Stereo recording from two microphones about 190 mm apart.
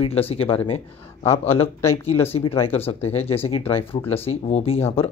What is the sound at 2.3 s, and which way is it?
Speech, 30° left (ahead or behind).